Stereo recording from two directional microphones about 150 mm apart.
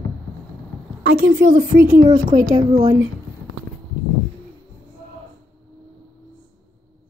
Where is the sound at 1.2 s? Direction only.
65° right (ahead or behind).